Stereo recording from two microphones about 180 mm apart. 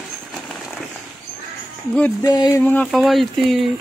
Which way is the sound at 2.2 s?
20° left (ahead or behind).